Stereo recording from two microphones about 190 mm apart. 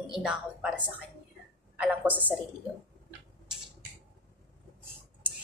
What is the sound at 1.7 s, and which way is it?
Speech, 5° right (ahead or behind).